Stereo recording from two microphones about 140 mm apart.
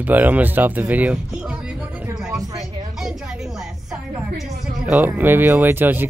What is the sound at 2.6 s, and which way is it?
Music, 5° right (ahead or behind).